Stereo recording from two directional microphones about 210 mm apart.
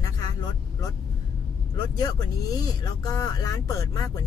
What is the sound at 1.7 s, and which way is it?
Speech, 20° left (ahead or behind).